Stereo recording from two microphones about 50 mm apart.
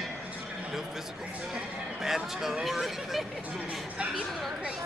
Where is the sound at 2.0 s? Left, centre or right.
Centre.